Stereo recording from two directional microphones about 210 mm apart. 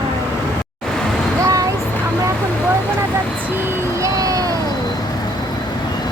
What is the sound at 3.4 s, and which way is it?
Vehicle, 10° right (ahead or behind).